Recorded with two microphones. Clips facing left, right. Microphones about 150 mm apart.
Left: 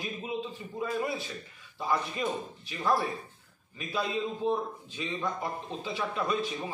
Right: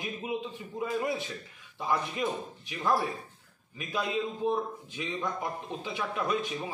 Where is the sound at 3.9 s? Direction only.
15° right (ahead or behind).